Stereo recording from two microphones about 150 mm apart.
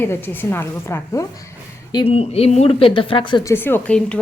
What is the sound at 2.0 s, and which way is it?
Speech, 40° left (ahead or behind).